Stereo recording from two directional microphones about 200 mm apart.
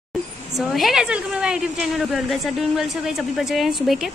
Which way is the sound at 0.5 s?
Centre (ahead or behind).